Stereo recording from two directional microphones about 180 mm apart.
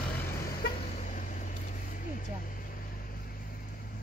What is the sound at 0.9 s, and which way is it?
Vehicle, 45° left (ahead or behind).